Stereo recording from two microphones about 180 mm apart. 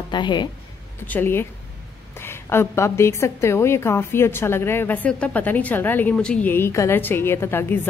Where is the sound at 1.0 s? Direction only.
10° left (ahead or behind).